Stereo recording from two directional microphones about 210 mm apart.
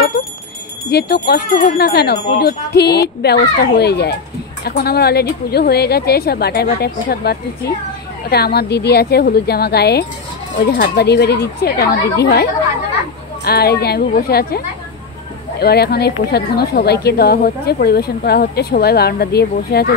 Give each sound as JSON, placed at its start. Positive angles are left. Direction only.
{"t": 0.8, "sound": "speech", "side_deg": 50}
{"t": 15.6, "sound": "speech", "side_deg": 50}